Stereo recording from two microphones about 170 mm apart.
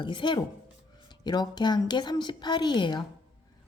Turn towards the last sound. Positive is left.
turn(degrees=25)  # may be behind; listen again after turning